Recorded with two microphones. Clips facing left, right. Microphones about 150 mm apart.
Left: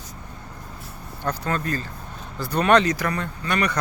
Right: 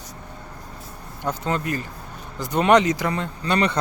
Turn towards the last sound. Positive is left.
turn(degrees=-25)  # may be behind; listen again after turning